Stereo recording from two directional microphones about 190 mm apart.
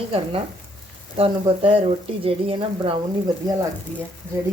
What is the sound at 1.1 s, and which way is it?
Speech, 30° right (ahead or behind).